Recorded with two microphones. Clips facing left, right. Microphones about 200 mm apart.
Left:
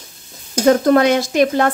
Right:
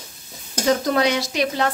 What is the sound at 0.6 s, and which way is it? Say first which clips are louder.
Speech: left 7 dB; 55° left (ahead or behind).